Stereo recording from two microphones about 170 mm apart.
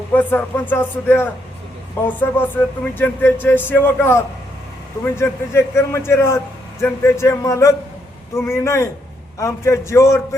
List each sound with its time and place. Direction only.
0.1 s speech: 10° left (ahead or behind)